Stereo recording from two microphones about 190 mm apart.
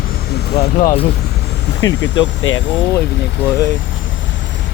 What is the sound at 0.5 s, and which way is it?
Vehicle, 35° left (ahead or behind).